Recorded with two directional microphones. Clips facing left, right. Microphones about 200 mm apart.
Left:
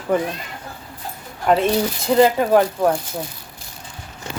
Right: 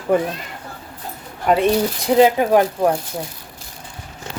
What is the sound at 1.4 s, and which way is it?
Speech, 5° right (ahead or behind).